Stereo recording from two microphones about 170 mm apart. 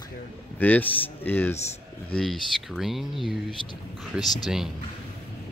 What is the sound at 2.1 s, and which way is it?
Speech, centre (ahead or behind).